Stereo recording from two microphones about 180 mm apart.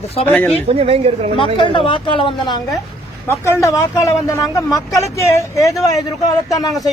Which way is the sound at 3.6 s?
20° left (ahead or behind).